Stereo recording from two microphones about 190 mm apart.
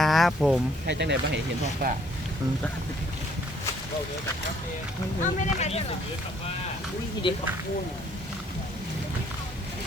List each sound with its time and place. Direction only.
0.0 s a sound: centre (ahead or behind)
0.9 s speech: 65° right (ahead or behind)
1.8 s speech: 55° right (ahead or behind)
5.2 s speech: 40° left (ahead or behind)
7.2 s speech: 25° left (ahead or behind)